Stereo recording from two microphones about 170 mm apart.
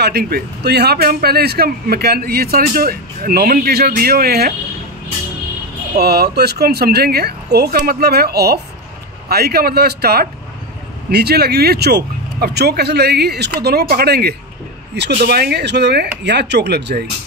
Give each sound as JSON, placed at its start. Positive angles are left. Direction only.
{"t": 0.0, "sound": "speech", "side_deg": -65}
{"t": 5.9, "sound": "speech", "side_deg": -70}